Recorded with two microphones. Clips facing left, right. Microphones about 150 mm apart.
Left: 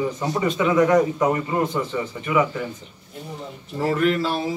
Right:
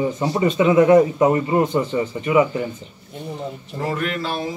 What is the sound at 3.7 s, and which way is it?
Speech, 5° left (ahead or behind).